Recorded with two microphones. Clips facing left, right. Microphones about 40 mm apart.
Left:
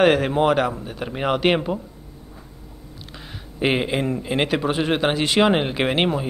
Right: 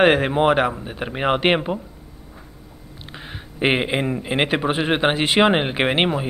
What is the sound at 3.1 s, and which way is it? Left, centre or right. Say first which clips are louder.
A man's voice: right 4 dB; right.